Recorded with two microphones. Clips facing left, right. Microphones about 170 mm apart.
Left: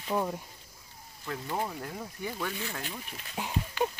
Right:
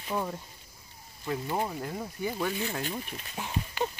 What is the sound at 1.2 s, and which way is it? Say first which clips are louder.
Speech: right 3 dB; 15° right (ahead or behind).